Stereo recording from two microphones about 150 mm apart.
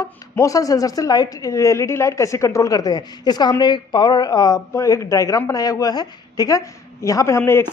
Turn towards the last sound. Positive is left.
turn(degrees=15)  # may be behind; listen again after turning